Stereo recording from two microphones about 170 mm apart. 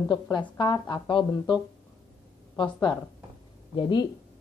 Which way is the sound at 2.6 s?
30° left (ahead or behind).